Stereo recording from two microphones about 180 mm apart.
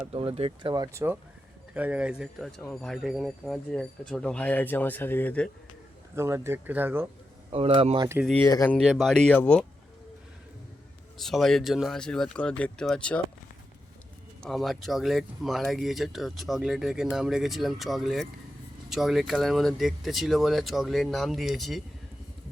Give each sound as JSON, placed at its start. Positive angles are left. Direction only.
{"t": 0.0, "sound": "speech", "side_deg": -30}
{"t": 0.7, "sound": "speech", "side_deg": -20}
{"t": 6.1, "sound": "speech", "side_deg": -15}
{"t": 7.5, "sound": "speech", "side_deg": -35}
{"t": 8.2, "sound": "speech", "side_deg": 5}
{"t": 11.2, "sound": "speech", "side_deg": 0}
{"t": 14.4, "sound": "speech", "side_deg": 0}